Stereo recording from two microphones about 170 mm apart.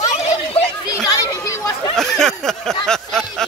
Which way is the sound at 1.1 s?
20° left (ahead or behind).